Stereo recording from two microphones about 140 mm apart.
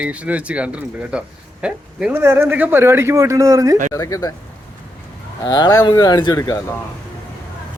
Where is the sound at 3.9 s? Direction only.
25° left (ahead or behind).